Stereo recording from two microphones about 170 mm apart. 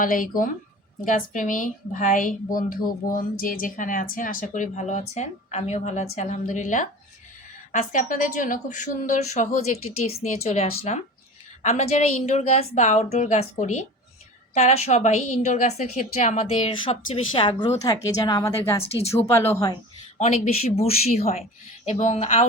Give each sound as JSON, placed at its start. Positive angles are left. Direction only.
{"t": 0.0, "sound": "a woman's voice", "side_deg": 55}
{"t": 16.8, "sound": "a woman's voice", "side_deg": 30}
{"t": 17.8, "sound": "speech", "side_deg": 20}
{"t": 20.1, "sound": "a woman's voice", "side_deg": 40}